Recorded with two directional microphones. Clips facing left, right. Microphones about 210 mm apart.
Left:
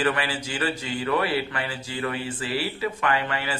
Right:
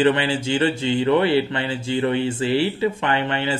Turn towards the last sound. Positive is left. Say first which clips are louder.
# right 5 dB
turn(degrees=-25)  # may be behind; listen again after turning